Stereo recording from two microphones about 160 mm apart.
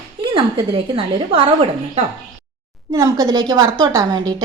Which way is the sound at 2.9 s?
20° right (ahead or behind).